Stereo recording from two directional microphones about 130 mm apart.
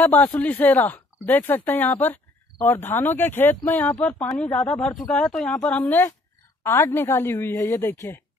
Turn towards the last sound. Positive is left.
turn(degrees=20)  # may be behind; listen again after turning